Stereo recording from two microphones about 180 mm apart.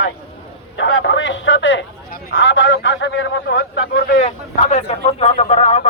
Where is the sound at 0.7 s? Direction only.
85° left; by 4.1 s 65° left (ahead or behind).